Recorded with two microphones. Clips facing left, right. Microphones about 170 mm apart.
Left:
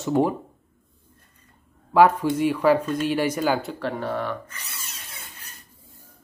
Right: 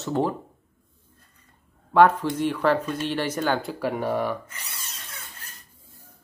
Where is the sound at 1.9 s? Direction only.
10° left (ahead or behind).